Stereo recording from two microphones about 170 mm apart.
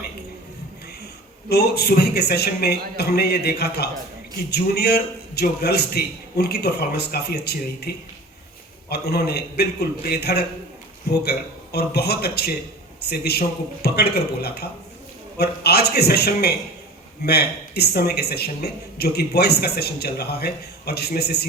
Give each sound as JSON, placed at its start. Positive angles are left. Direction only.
{"t": 1.5, "sound": "speech", "side_deg": 70}